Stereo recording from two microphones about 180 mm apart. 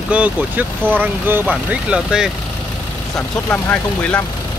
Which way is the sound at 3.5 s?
10° left (ahead or behind).